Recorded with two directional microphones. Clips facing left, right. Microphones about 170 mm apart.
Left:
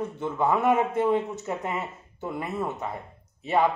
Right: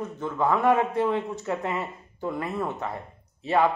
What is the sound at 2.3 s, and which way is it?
Speech, 20° left (ahead or behind).